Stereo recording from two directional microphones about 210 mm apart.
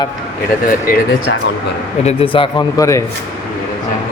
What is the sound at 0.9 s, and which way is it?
Speech, 40° left (ahead or behind).